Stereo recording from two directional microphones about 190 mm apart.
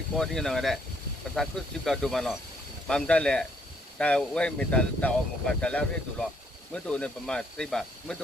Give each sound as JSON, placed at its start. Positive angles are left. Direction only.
{"t": 0.2, "sound": "speech", "side_deg": 0}